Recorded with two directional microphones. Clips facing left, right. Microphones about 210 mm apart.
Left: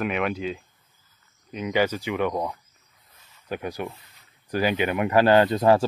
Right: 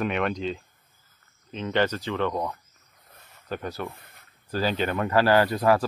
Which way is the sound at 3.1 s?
55° right (ahead or behind).